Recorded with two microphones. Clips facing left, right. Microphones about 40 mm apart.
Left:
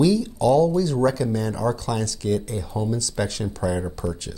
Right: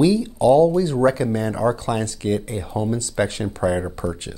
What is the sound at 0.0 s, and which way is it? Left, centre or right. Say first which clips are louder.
Speech: right 3 dB; right.